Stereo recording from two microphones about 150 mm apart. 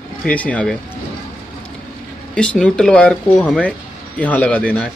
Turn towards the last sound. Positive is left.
turn(degrees=10)  # may be behind; listen again after turning